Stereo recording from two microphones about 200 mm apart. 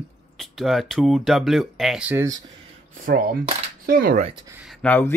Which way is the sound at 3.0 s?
40° right (ahead or behind).